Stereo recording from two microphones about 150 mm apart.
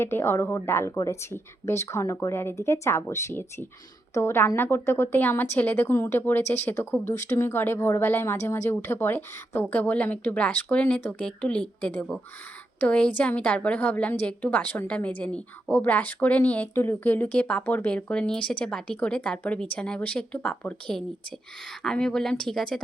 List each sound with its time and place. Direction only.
0.0 s a woman's voice: 15° left (ahead or behind)